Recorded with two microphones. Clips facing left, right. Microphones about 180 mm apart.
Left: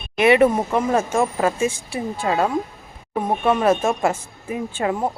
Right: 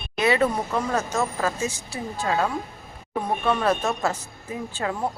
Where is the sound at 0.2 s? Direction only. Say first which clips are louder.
Left 6 dB; 25° left (ahead or behind).